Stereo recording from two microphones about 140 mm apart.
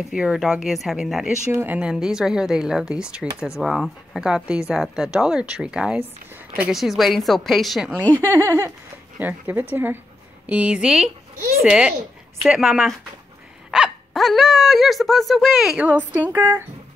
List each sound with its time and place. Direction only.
0.1 s speech: 5° right (ahead or behind)
1.5 s speech: 15° right (ahead or behind)
8.0 s speech: 15° left (ahead or behind)
8.3 s speech: 15° right (ahead or behind)